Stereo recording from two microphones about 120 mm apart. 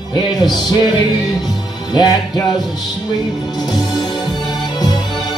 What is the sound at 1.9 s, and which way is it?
Music, 35° left (ahead or behind).